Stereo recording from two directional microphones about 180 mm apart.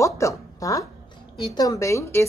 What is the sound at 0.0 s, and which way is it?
A woman's voice, 15° left (ahead or behind).